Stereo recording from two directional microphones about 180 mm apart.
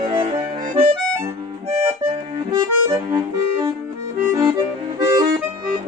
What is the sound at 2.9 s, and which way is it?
Music, 20° right (ahead or behind).